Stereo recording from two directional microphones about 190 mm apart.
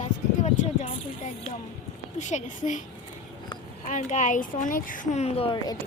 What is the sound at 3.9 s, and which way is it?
Speech, 40° left (ahead or behind).